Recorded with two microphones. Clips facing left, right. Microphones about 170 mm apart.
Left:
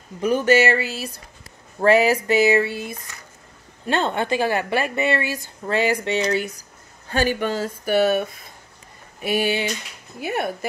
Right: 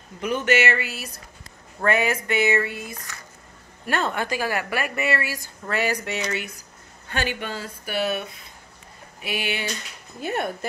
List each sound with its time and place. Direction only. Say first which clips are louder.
0.2 s a woman's voice: left 5 dB; 35° left (ahead or behind)
10.2 s speech: left 2 dB; 5° left (ahead or behind)